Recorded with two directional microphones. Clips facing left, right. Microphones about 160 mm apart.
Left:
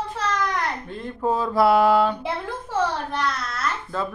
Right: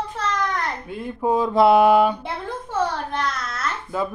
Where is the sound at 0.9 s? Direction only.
10° right (ahead or behind).